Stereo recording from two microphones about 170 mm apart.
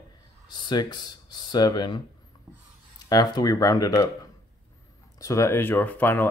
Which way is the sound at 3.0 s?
25° left (ahead or behind).